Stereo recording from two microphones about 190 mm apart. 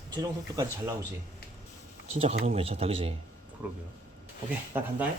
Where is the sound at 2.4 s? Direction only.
30° right (ahead or behind).